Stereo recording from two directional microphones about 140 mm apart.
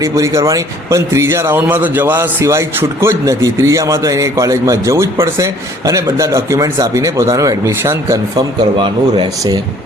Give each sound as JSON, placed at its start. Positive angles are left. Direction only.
{"t": 0.0, "sound": "speech", "side_deg": -20}
{"t": 8.8, "sound": "speech", "side_deg": -35}